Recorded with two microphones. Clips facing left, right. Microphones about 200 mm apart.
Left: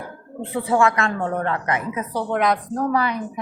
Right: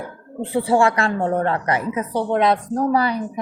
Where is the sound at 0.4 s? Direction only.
30° right (ahead or behind).